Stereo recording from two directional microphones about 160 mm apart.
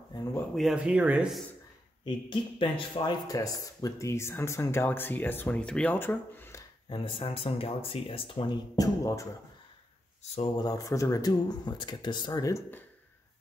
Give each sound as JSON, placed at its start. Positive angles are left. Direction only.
{"t": 0.6, "sound": "speech", "side_deg": -5}
{"t": 2.0, "sound": "speech", "side_deg": 30}
{"t": 6.9, "sound": "speech", "side_deg": 30}
{"t": 8.7, "sound": "speech", "side_deg": 20}
{"t": 10.6, "sound": "speech", "side_deg": 20}